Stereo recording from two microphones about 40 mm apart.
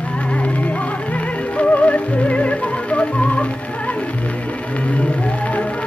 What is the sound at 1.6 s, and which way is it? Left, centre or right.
Music, left.